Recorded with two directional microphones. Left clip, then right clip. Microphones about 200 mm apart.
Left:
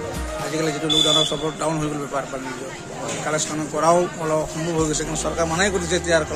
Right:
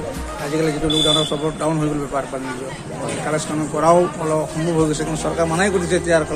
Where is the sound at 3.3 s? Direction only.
20° left (ahead or behind).